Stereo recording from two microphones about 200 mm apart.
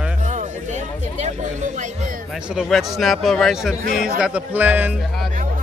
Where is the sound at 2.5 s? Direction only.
Centre (ahead or behind).